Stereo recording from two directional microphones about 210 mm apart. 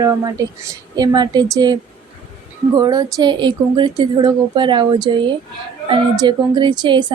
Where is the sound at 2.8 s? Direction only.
20° right (ahead or behind).